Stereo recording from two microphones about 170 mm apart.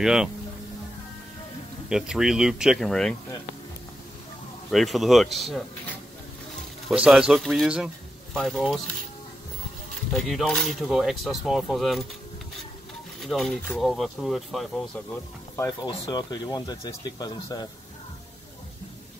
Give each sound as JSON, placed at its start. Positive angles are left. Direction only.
{"t": 0.0, "sound": "speech", "side_deg": -5}
{"t": 1.9, "sound": "speech", "side_deg": -5}
{"t": 4.6, "sound": "speech", "side_deg": 0}
{"t": 6.9, "sound": "speech", "side_deg": -5}
{"t": 9.9, "sound": "speech", "side_deg": 0}
{"t": 13.2, "sound": "speech", "side_deg": 0}
{"t": 15.5, "sound": "speech", "side_deg": 20}